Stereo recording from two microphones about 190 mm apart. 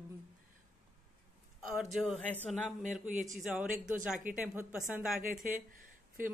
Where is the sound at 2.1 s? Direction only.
5° left (ahead or behind).